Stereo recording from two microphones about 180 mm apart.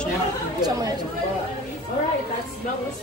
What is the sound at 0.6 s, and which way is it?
Speech, 20° right (ahead or behind).